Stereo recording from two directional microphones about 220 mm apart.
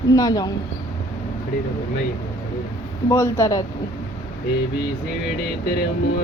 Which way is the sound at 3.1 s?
10° left (ahead or behind).